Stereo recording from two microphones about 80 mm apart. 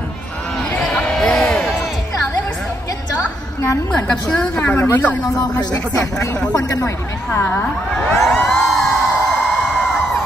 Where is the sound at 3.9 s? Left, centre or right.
Centre.